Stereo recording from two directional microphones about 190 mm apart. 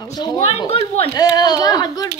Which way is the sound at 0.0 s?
20° left (ahead or behind).